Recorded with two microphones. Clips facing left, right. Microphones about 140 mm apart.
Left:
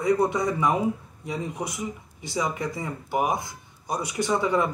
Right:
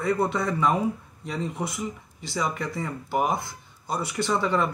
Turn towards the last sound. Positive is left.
turn(degrees=15)  # may be behind; listen again after turning